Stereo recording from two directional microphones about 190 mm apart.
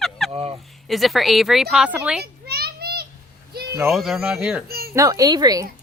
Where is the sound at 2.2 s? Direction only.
55° right (ahead or behind).